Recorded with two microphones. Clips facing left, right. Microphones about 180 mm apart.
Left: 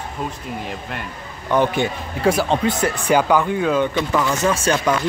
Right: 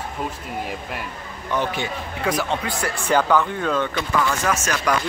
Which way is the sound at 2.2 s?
30° left (ahead or behind).